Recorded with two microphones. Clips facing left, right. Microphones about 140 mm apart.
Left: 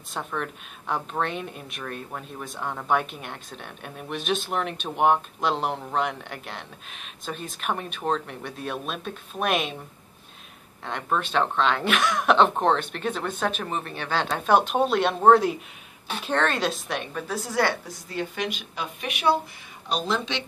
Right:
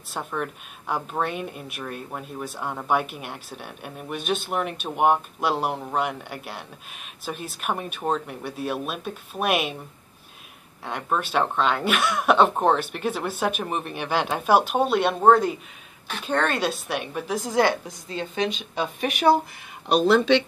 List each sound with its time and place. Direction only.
0.1 s speech: 5° right (ahead or behind)
10.9 s speech: 5° right (ahead or behind); by 18.9 s 25° right (ahead or behind)
18.9 s speech: 40° right (ahead or behind)
19.9 s speech: 65° right (ahead or behind)